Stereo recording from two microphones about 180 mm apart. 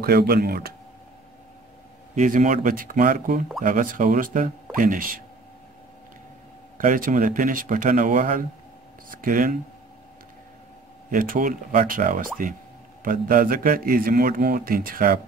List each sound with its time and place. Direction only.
0.0 s speech: 60° right (ahead or behind)
2.1 s a man's voice: 45° right (ahead or behind)
6.8 s a man's voice: 50° right (ahead or behind)
11.1 s a man's voice: 50° right (ahead or behind)